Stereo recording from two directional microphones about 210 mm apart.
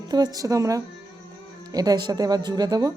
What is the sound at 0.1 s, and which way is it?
A woman's voice, 20° right (ahead or behind).